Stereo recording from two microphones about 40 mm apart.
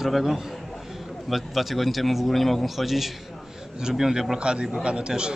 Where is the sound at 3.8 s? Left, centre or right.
Centre.